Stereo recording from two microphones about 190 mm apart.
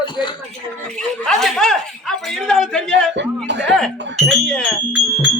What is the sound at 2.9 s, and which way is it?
Speech, 70° right (ahead or behind).